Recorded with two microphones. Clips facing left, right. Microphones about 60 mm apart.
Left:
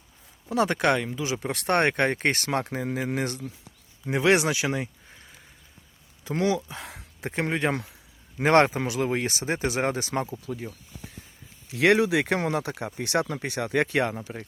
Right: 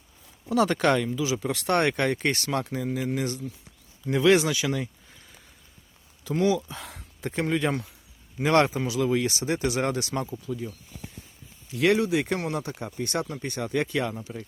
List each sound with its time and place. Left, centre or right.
0.5 s speech: left
1.2 s speech: left
4.0 s speech: left
6.7 s speech: centre
7.4 s speech: left
10.4 s speech: left
11.7 s speech: left
12.4 s speech: left